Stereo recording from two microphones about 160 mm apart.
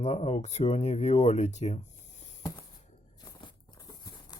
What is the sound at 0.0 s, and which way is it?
Speech, 45° left (ahead or behind).